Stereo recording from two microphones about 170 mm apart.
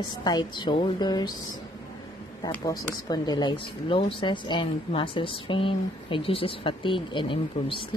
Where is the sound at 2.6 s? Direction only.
20° left (ahead or behind).